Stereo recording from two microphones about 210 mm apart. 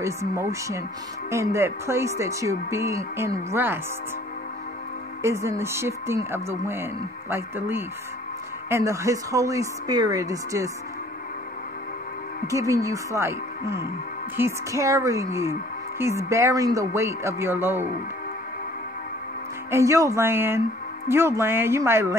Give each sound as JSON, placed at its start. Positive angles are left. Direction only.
{"t": 0.0, "sound": "speech", "side_deg": -15}
{"t": 5.2, "sound": "speech", "side_deg": -15}
{"t": 12.4, "sound": "speech", "side_deg": -15}
{"t": 19.7, "sound": "speech", "side_deg": -15}